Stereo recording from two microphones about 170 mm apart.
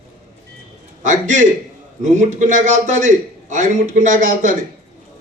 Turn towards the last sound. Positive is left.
turn(degrees=-50)  # may be behind; listen again after turning